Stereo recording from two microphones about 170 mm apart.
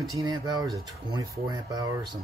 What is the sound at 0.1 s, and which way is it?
Speech, 20° right (ahead or behind).